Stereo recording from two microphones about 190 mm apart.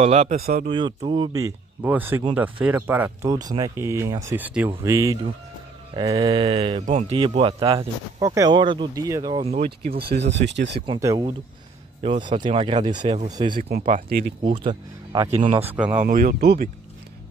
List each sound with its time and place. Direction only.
0.0 s speech: 35° right (ahead or behind)
0.4 s speech: 55° right (ahead or behind)
0.7 s speech: 25° right (ahead or behind)
1.3 s speech: 15° right (ahead or behind)
6.3 s speech: 30° right (ahead or behind)
7.7 s speech: 15° right (ahead or behind)
9.4 s speech: 35° right (ahead or behind)
9.9 s speech: 55° right (ahead or behind)
10.3 s speech: 70° right (ahead or behind)
10.9 s speech: 20° right (ahead or behind)
13.6 s speech: 55° right (ahead or behind)
14.4 s speech: 25° right (ahead or behind)
15.5 s speech: 10° right (ahead or behind)
16.0 s speech: 45° right (ahead or behind)